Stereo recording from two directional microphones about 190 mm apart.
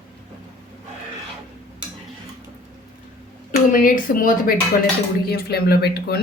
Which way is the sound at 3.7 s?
45° left (ahead or behind).